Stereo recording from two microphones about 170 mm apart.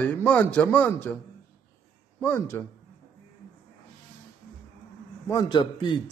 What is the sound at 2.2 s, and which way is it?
Speech, 10° left (ahead or behind).